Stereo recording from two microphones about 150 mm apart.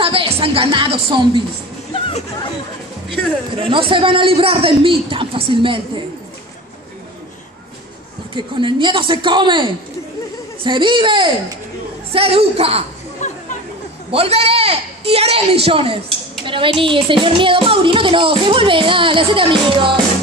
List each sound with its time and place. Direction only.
0.0 s a sound: 35° right (ahead or behind)
3.5 s speech: 35° right (ahead or behind)
8.4 s speech: 35° right (ahead or behind)
13.2 s chatter: 55° left (ahead or behind)
14.1 s speech: 40° right (ahead or behind)